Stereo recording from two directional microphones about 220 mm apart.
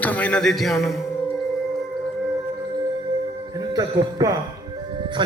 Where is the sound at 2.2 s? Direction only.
15° right (ahead or behind).